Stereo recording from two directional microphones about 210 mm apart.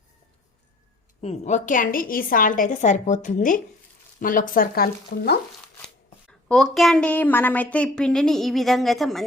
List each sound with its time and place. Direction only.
1.2 s a woman's voice: 30° left (ahead or behind); by 5.4 s 50° left (ahead or behind)
6.5 s a woman's voice: centre (ahead or behind)